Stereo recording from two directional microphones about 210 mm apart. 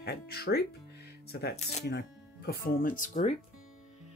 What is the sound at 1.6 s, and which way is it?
Speech, 30° left (ahead or behind).